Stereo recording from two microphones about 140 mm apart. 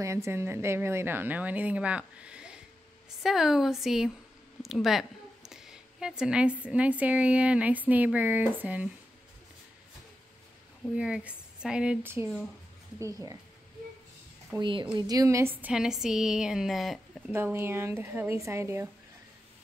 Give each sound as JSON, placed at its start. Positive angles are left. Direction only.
{"t": 0.0, "sound": "a woman's voice", "side_deg": -20}
{"t": 11.0, "sound": "a woman's voice", "side_deg": -5}
{"t": 14.6, "sound": "a woman's voice", "side_deg": -35}
{"t": 15.7, "sound": "a woman's voice", "side_deg": -5}
{"t": 17.3, "sound": "a woman's voice", "side_deg": -15}